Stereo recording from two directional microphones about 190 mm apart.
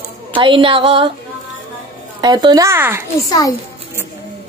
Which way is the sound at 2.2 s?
20° right (ahead or behind).